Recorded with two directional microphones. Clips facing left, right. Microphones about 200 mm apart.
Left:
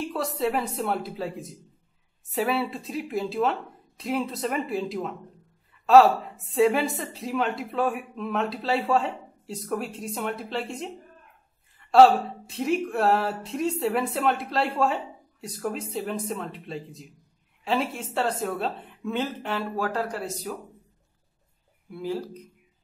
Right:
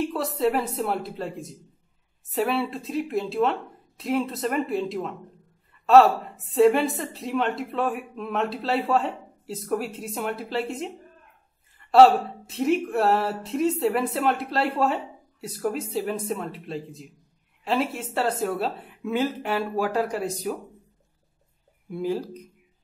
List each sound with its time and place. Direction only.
0.0 s a woman's voice: centre (ahead or behind)